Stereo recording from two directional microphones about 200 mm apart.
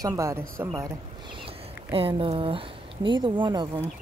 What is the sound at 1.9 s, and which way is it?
Speech, 25° right (ahead or behind).